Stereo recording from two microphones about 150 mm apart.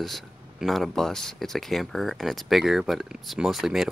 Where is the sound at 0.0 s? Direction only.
Centre (ahead or behind).